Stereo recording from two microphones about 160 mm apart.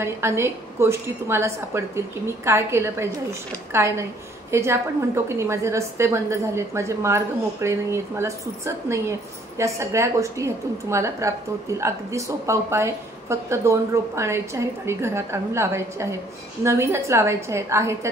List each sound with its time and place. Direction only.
0.0 s a woman's voice: 15° right (ahead or behind)